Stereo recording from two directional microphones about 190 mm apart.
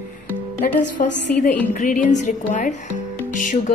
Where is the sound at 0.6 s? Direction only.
45° left (ahead or behind).